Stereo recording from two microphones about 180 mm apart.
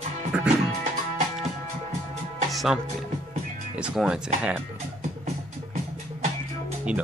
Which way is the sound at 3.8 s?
5° right (ahead or behind).